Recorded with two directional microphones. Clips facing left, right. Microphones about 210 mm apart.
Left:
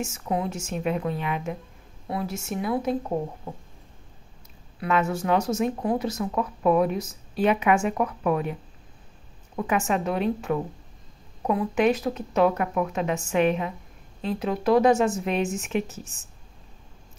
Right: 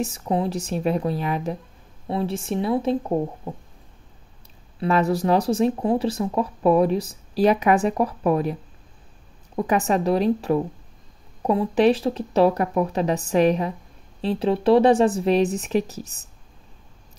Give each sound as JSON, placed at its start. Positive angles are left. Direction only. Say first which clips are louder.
{"t": 0.0, "sound": "speech", "louder": "right 4 dB", "side_deg": -35}
{"t": 4.7, "sound": "speech", "louder": "right 4 dB", "side_deg": -35}
{"t": 9.6, "sound": "speech", "louder": "right 4 dB", "side_deg": -35}